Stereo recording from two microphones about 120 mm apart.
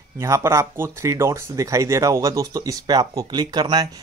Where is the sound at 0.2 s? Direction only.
25° right (ahead or behind).